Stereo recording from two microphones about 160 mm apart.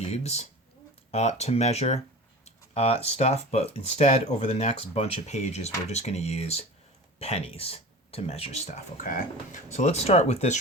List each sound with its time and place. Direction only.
0.1 s speech: 40° left (ahead or behind)